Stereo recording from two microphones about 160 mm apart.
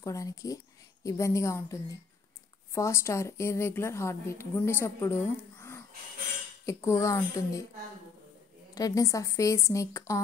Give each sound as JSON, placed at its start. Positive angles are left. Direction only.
{"t": 0.0, "sound": "a woman's voice", "side_deg": 20}
{"t": 8.7, "sound": "speech", "side_deg": 20}